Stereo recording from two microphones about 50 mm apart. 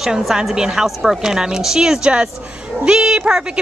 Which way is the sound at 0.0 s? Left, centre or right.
Centre.